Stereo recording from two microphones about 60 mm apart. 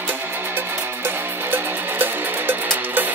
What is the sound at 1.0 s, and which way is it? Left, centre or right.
Music, right.